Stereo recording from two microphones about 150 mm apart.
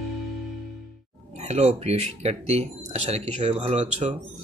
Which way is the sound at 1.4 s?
50° right (ahead or behind).